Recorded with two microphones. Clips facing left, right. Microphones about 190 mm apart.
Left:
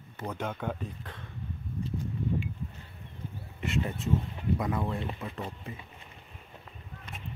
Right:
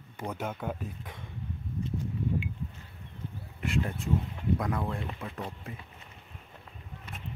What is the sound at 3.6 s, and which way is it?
Speech, centre (ahead or behind).